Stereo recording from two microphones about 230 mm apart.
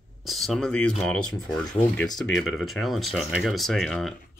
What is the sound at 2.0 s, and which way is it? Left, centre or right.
Speech, centre.